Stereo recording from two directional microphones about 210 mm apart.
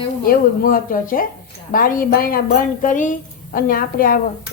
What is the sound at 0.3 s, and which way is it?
A woman's voice, 45° left (ahead or behind).